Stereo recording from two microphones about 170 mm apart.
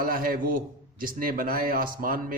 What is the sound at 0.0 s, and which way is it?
A man's voice, 55° right (ahead or behind).